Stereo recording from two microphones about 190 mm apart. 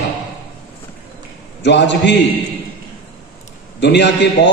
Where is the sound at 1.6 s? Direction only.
65° left (ahead or behind).